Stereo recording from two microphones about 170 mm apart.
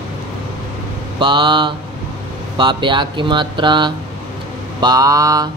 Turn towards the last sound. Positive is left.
turn(degrees=-20)  # may be behind; listen again after turning